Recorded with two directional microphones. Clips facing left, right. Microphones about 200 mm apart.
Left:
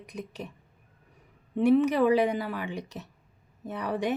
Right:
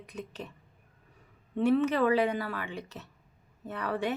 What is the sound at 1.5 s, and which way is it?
Speech, 15° left (ahead or behind).